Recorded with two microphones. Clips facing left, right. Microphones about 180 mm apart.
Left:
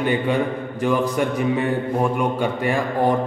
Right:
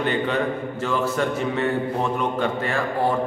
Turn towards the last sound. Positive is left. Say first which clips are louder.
# left 3 dB
turn(degrees=15)  # may be behind; listen again after turning